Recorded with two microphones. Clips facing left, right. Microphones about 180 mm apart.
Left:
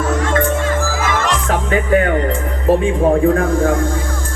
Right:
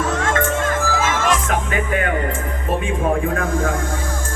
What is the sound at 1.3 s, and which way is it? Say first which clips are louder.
Music: left 3 dB; 35° left (ahead or behind).